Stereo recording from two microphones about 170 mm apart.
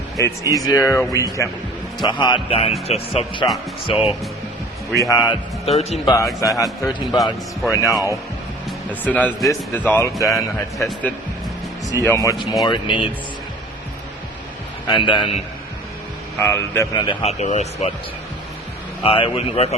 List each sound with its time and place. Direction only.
0.2 s a man's voice: 20° left (ahead or behind)
4.9 s a man's voice: 20° left (ahead or behind)
5.3 s speech: 35° left (ahead or behind)
6.1 s a man's voice: 20° left (ahead or behind)
12.0 s a man's voice: 15° left (ahead or behind)
14.8 s a man's voice: 30° left (ahead or behind)
16.5 s a man's voice: 15° left (ahead or behind)
17.4 s speech: 40° left (ahead or behind)
19.0 s speech: 30° left (ahead or behind)